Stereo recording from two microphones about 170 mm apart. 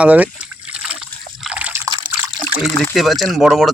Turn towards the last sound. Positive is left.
turn(degrees=0)  # may be behind; listen again after turning